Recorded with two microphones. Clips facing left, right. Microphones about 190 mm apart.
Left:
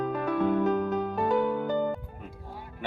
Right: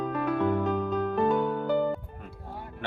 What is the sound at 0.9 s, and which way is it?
Music, 20° left (ahead or behind).